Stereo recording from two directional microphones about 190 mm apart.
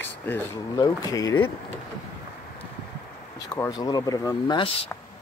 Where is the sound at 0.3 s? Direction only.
15° left (ahead or behind).